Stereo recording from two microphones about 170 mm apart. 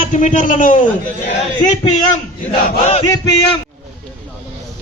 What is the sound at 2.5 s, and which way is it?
Battle cry, 30° left (ahead or behind).